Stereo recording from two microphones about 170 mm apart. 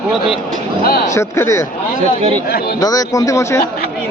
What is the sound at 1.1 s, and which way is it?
Speech, 15° left (ahead or behind).